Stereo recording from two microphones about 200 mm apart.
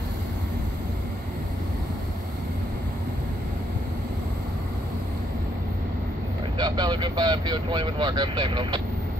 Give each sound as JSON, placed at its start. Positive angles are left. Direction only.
{"t": 6.6, "sound": "speech", "side_deg": -20}